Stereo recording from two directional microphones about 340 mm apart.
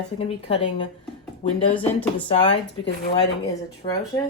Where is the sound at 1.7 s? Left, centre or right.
Centre.